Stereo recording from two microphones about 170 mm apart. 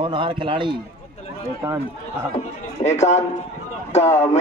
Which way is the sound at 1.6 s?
20° right (ahead or behind).